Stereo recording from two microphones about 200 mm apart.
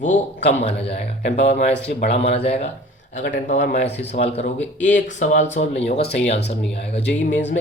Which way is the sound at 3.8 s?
60° left (ahead or behind).